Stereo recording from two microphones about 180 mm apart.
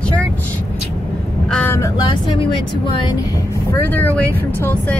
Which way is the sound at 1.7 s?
15° left (ahead or behind).